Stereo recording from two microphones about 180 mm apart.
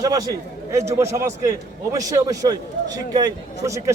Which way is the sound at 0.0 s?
20° right (ahead or behind).